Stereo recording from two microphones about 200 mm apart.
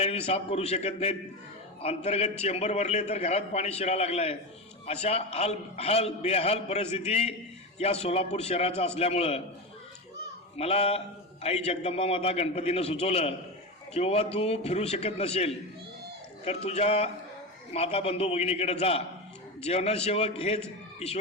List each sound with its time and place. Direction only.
0.0 s a man's voice: 30° left (ahead or behind)
10.6 s a man's voice: 30° left (ahead or behind)